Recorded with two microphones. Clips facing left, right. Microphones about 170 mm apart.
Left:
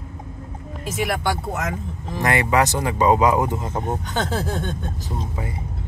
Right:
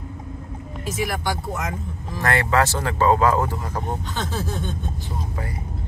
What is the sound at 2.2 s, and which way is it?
Speech, 15° left (ahead or behind).